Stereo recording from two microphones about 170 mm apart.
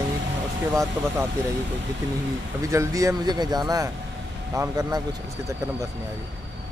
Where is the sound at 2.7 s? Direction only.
20° right (ahead or behind).